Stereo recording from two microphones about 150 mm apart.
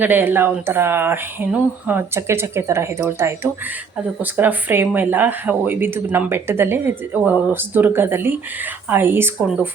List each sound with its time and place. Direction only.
0.0 s speech: 15° right (ahead or behind)